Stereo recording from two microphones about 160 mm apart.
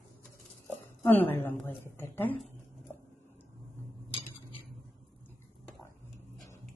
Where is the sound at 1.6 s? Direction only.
15° left (ahead or behind).